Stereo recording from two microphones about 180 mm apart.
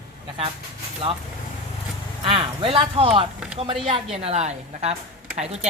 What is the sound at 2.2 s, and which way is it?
Speech, 30° right (ahead or behind).